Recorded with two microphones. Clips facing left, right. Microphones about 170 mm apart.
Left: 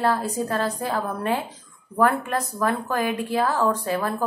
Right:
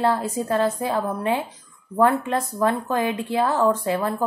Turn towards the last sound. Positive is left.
turn(degrees=-20)  # may be behind; listen again after turning